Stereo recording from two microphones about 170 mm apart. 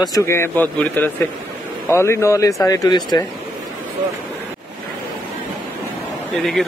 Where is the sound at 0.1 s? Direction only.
15° left (ahead or behind).